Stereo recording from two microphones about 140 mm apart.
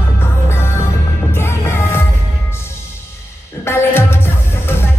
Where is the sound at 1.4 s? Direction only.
20° left (ahead or behind).